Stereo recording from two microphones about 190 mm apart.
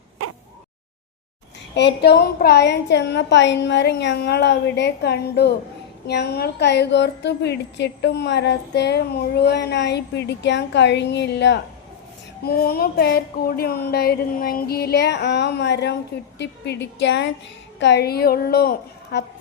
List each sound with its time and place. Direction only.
1.7 s a woman's voice: 60° left (ahead or behind)
12.5 s a woman's voice: 55° left (ahead or behind)